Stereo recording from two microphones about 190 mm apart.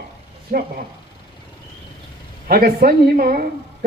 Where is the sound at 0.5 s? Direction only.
40° right (ahead or behind).